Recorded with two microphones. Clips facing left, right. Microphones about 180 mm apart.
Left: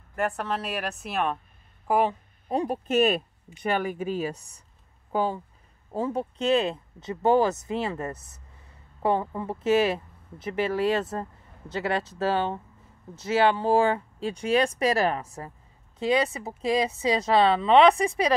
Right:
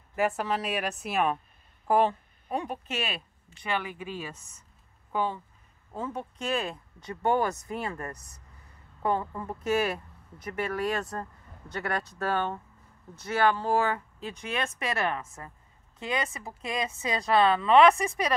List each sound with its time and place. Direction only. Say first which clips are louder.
0.1 s a woman's voice: right 1 dB; 5° right (ahead or behind)
1.9 s a woman's voice: even; 10° left (ahead or behind)
2.4 s speech: left 6 dB; 35° left (ahead or behind)